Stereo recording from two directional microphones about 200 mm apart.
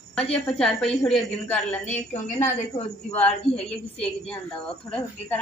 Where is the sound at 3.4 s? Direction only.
30° left (ahead or behind).